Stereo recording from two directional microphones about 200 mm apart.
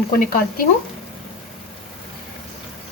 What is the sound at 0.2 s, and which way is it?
Speech, 45° left (ahead or behind).